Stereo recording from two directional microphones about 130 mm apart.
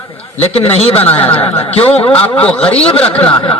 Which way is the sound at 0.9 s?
15° left (ahead or behind).